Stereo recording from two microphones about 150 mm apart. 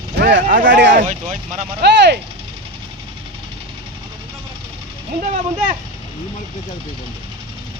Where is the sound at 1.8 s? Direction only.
90° right.